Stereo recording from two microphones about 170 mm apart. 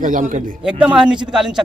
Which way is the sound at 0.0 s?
50° right (ahead or behind).